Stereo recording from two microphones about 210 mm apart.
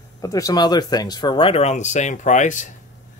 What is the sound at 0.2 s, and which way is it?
Speech, 15° left (ahead or behind).